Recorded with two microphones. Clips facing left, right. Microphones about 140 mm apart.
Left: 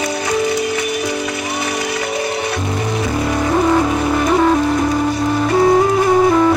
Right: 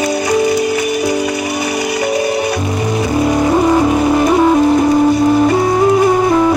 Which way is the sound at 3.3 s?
15° right (ahead or behind).